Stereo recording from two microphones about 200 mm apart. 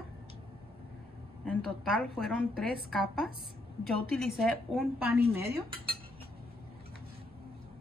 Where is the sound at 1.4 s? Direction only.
5° left (ahead or behind).